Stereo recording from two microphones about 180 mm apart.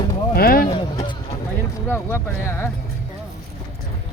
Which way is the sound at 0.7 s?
25° left (ahead or behind).